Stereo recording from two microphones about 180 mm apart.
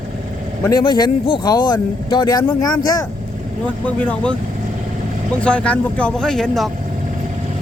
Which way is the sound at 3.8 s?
5° left (ahead or behind).